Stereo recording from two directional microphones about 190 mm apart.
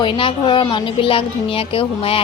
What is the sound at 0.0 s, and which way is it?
A woman's voice, 30° left (ahead or behind).